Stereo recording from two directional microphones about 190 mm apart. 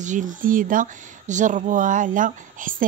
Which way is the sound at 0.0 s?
40° right (ahead or behind).